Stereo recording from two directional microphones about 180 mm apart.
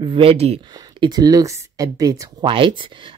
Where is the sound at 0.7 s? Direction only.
25° right (ahead or behind).